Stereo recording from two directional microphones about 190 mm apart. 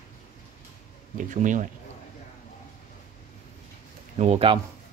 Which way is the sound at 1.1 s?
40° right (ahead or behind).